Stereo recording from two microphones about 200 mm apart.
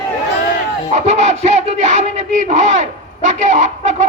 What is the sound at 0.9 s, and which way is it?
Music, 35° right (ahead or behind).